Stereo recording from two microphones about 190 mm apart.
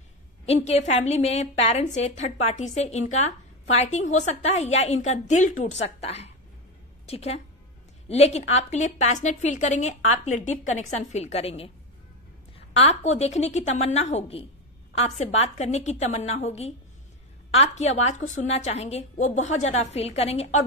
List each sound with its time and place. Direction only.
0.5 s a woman's voice: 35° left (ahead or behind)